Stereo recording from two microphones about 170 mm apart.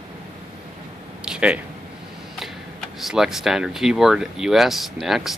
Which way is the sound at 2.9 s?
Centre (ahead or behind).